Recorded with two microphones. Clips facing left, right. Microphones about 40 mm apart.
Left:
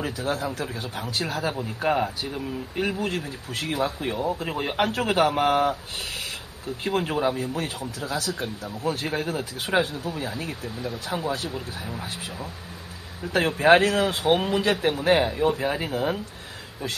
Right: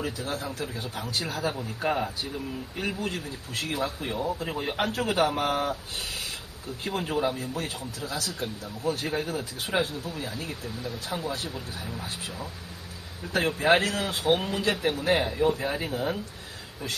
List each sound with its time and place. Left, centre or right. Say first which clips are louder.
0.0 s speech: left 4 dB; left
1.6 s speech: left 4 dB; left
3.0 s speech: left 4 dB; left
6.8 s speech: left 3 dB; left
13.3 s speech: left 5 dB; left